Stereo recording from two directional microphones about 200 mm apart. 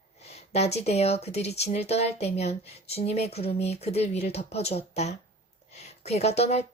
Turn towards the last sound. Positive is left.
turn(degrees=30)  # may be behind; listen again after turning